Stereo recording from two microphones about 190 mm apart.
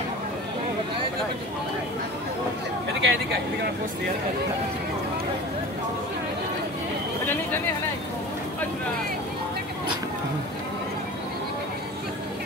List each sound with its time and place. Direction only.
3.0 s speech: 65° right (ahead or behind)